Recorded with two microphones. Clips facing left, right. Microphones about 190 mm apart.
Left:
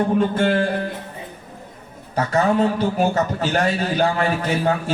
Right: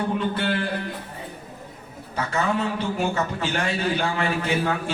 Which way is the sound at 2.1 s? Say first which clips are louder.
Left 6 dB; 40° left (ahead or behind).